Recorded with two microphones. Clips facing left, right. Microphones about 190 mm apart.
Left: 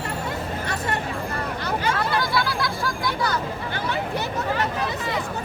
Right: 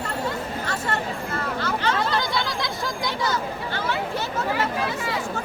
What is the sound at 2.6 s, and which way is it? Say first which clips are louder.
Music: left 2 dB; 20° right (ahead or behind).